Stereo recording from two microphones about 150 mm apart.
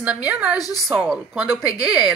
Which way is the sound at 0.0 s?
10° right (ahead or behind).